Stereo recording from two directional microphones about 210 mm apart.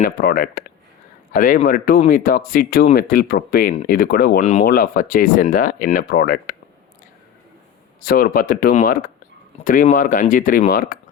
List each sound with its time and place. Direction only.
0.0 s speech: 45° left (ahead or behind)
4.4 s speech: 30° left (ahead or behind)
8.0 s speech: 45° left (ahead or behind)